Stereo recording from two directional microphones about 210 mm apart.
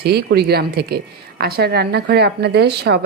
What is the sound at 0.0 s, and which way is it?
Speech, 50° right (ahead or behind).